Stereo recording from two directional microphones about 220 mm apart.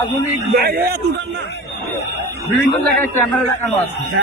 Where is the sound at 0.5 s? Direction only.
45° right (ahead or behind).